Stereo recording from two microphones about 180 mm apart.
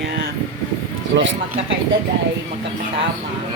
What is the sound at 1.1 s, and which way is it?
Speech, 90° right.